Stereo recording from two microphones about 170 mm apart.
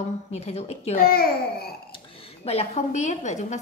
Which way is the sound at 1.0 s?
60° left (ahead or behind).